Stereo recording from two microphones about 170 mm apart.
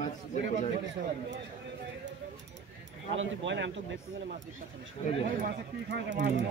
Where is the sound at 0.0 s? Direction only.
45° left (ahead or behind).